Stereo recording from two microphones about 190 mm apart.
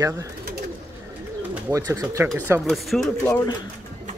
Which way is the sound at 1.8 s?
15° right (ahead or behind).